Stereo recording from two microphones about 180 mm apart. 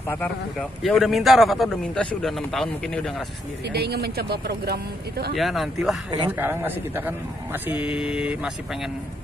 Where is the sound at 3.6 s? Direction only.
65° right (ahead or behind).